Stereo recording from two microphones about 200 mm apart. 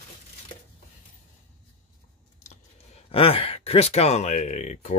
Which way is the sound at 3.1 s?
30° left (ahead or behind).